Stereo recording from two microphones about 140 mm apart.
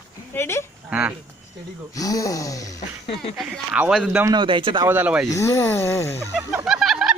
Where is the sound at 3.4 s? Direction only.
5° right (ahead or behind).